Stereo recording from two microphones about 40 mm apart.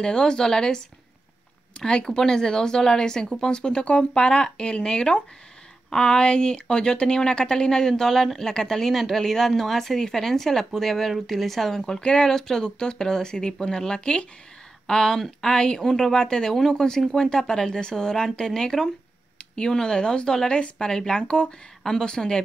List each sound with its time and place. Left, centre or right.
0.0 s speech: left